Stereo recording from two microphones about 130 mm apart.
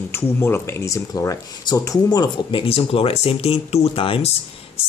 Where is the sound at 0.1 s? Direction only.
20° left (ahead or behind).